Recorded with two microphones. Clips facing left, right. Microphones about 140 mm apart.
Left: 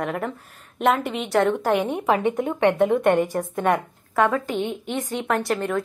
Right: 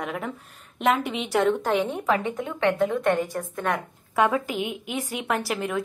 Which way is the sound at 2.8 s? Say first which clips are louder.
Left 4 dB; 55° left (ahead or behind).